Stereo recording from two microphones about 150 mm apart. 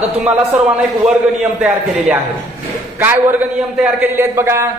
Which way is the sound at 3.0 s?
15° right (ahead or behind).